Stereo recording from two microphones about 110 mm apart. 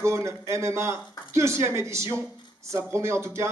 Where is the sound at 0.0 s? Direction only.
25° right (ahead or behind).